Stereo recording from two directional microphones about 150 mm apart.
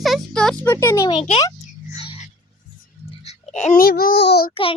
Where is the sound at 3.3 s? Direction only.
50° left (ahead or behind).